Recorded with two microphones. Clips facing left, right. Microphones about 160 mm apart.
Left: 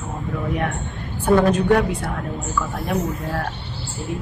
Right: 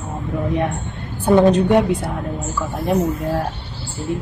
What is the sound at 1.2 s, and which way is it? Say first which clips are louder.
Speech: right 3 dB; 25° right (ahead or behind).